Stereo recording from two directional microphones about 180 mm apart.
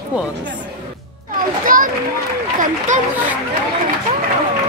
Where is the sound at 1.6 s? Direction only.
50° right (ahead or behind).